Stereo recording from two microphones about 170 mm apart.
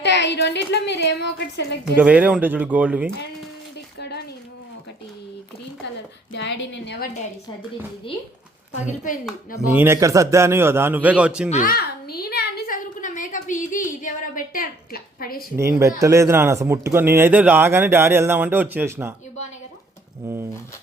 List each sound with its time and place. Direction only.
0.0 s a woman's voice: 90° left
2.0 s speech: 10° right (ahead or behind)
3.9 s a sound: 80° left
6.3 s a woman's voice: 90° left
8.1 s speech: 30° left (ahead or behind)
9.6 s speech: 10° right (ahead or behind)
11.4 s a sound: 50° left (ahead or behind)
15.5 s speech: 15° right (ahead or behind)
20.2 s speech: 15° right (ahead or behind)